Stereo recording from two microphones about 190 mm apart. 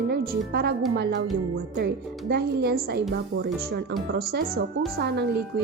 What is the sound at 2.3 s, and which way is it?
Speech, 55° right (ahead or behind).